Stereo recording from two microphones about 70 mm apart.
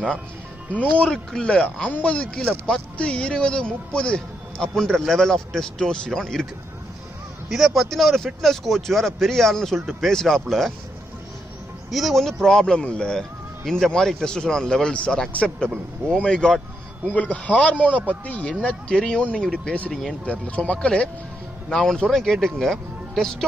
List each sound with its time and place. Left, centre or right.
0.7 s speech: centre
7.4 s speech: centre
11.9 s speech: centre
17.1 s speech: left
19.9 s speech: centre
20.2 s speech: centre